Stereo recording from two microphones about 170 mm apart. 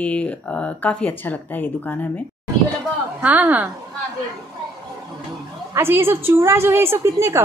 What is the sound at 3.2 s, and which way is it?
Speech, 10° right (ahead or behind).